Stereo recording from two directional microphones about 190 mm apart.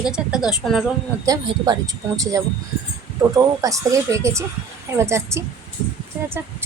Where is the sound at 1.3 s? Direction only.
20° right (ahead or behind).